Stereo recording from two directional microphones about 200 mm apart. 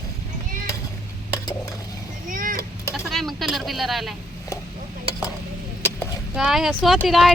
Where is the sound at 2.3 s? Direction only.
45° right (ahead or behind).